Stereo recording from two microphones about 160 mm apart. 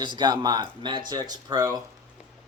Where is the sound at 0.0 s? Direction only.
30° right (ahead or behind).